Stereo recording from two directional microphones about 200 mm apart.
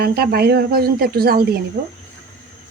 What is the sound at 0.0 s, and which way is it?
Speech, 50° right (ahead or behind).